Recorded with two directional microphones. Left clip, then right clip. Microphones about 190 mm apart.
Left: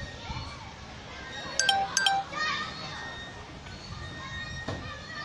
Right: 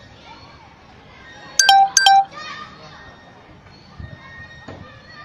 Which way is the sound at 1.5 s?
40° right (ahead or behind).